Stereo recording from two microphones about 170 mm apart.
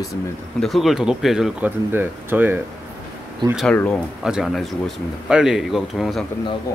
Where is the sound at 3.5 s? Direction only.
10° left (ahead or behind).